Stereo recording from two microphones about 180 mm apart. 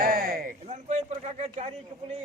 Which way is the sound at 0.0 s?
55° right (ahead or behind).